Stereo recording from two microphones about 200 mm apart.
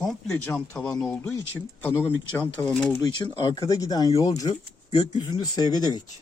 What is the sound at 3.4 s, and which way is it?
Speech, 20° left (ahead or behind).